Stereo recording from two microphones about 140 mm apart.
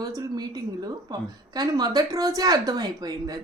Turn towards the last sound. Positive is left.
turn(degrees=-25)  # may be behind; listen again after turning